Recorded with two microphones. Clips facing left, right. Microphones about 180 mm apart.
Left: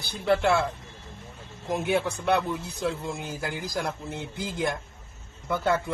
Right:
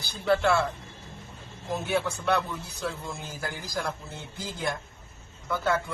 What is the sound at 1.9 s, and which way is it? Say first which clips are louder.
A man's voice: left 2 dB; 15° left (ahead or behind).